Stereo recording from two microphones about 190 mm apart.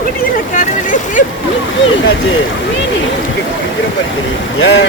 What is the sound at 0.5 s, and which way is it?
Vehicle, 40° left (ahead or behind).